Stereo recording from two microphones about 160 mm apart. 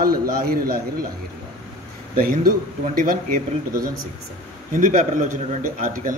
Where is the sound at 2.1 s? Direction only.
60° right (ahead or behind).